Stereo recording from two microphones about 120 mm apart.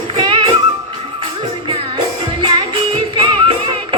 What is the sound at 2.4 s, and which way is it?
Music, 45° right (ahead or behind).